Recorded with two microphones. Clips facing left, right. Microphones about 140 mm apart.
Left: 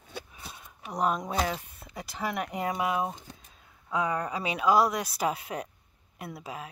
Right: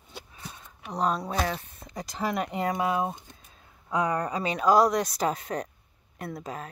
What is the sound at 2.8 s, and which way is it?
Speech, 30° right (ahead or behind).